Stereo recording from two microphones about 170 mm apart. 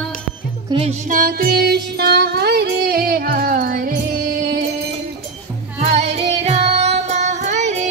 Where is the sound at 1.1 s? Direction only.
60° right (ahead or behind).